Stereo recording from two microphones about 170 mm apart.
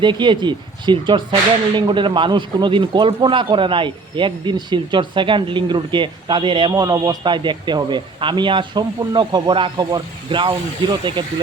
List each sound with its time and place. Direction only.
0.0 s speech: 25° right (ahead or behind)